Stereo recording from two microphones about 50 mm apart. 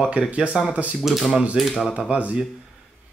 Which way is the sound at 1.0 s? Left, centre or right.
Centre.